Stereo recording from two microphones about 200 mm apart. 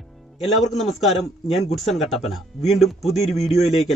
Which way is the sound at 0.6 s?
Centre (ahead or behind).